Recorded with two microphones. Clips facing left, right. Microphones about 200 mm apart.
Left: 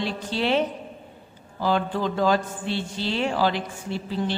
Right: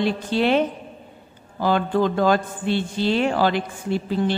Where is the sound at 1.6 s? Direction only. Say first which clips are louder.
Right 4 dB; 55° right (ahead or behind).